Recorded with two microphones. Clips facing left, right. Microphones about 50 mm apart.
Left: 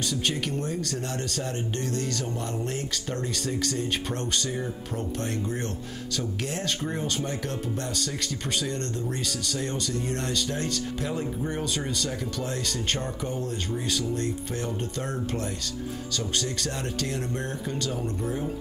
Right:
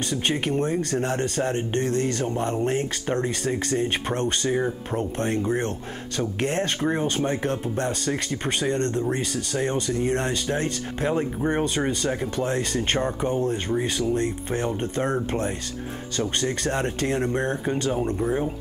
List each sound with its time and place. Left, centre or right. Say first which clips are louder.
0.1 s speech: right 7 dB; right